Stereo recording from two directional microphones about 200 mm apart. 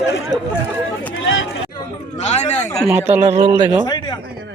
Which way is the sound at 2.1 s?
35° left (ahead or behind).